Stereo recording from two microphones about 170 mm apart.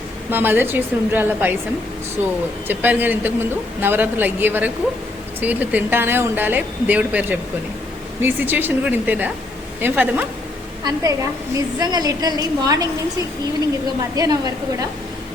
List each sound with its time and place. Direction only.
0.3 s speech: 10° right (ahead or behind)
2.6 s speech: 10° right (ahead or behind)
10.8 s a woman's voice: 20° right (ahead or behind)
14.2 s a woman's voice: 20° right (ahead or behind)